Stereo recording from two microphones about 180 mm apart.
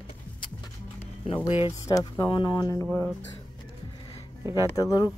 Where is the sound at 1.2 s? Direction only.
30° left (ahead or behind).